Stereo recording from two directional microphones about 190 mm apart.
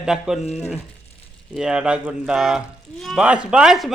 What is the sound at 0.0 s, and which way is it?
Speech, 5° right (ahead or behind).